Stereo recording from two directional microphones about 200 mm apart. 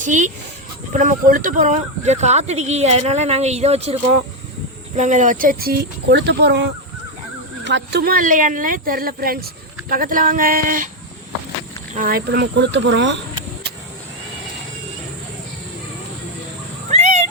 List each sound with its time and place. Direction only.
0.0 s speech: 40° right (ahead or behind)
4.9 s speech: 40° right (ahead or behind)
11.9 s speech: 45° right (ahead or behind); by 13.1 s 65° right (ahead or behind)
16.9 s a sound: 35° right (ahead or behind)